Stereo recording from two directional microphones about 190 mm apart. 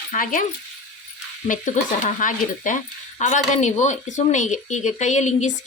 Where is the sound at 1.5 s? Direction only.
40° left (ahead or behind).